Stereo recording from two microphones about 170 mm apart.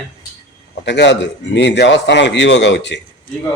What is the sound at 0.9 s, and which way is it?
A man's voice, 90° left.